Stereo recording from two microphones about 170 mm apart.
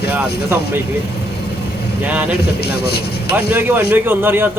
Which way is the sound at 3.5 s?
10° right (ahead or behind).